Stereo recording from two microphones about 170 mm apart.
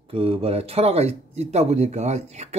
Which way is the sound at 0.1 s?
35° right (ahead or behind).